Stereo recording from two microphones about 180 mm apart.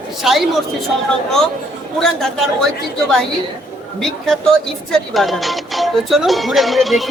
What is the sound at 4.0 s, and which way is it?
Music, 5° left (ahead or behind).